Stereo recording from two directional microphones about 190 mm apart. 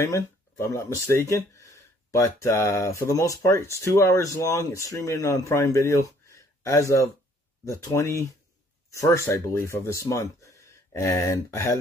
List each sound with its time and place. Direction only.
0.0 s speech: 15° left (ahead or behind)